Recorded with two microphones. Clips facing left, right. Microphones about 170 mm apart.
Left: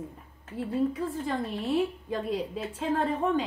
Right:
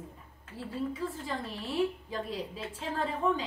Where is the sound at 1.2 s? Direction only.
65° left (ahead or behind).